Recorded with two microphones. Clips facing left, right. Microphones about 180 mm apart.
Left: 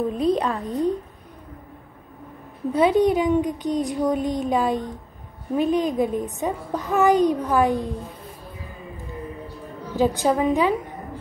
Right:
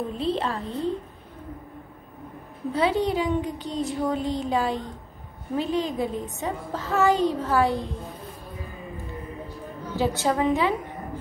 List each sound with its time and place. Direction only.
0.2 s a woman's voice: 15° left (ahead or behind)
2.7 s a child's voice: 20° left (ahead or behind)
9.9 s a woman's voice: 15° left (ahead or behind)